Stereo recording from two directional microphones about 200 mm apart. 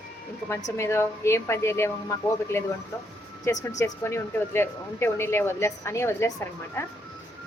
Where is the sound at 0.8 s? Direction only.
15° left (ahead or behind).